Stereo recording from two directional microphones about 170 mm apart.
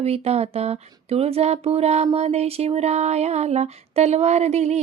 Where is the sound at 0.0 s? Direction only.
35° right (ahead or behind).